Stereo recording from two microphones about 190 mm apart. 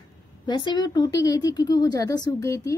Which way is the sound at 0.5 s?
25° left (ahead or behind).